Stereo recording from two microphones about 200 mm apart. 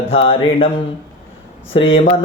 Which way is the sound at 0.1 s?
30° left (ahead or behind).